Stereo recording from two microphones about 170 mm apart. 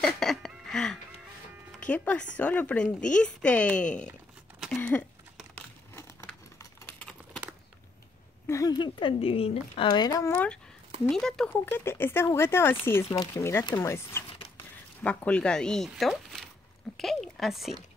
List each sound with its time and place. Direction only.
0.0 s music: centre (ahead or behind)
1.7 s speech: 5° left (ahead or behind)
4.6 s a sound: 5° left (ahead or behind)
8.5 s speech: 20° left (ahead or behind); by 11.5 s 5° left (ahead or behind)
11.5 s speech: 15° left (ahead or behind)